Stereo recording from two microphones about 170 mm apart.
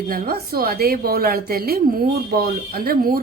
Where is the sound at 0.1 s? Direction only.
60° right (ahead or behind).